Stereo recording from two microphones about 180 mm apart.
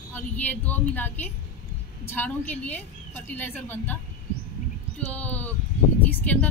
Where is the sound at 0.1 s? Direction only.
10° left (ahead or behind).